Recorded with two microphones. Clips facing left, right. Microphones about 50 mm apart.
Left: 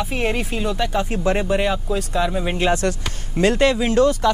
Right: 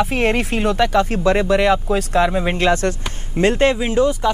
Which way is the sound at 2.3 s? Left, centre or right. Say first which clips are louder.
Right 3 dB; right.